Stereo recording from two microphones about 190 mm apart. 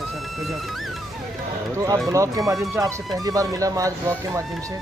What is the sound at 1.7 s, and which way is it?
Speech, 15° right (ahead or behind).